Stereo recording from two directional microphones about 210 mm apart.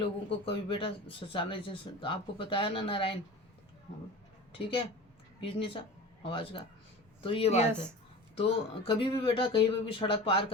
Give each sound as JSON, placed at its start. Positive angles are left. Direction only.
{"t": 0.3, "sound": "speech", "side_deg": 25}
{"t": 4.5, "sound": "speech", "side_deg": 25}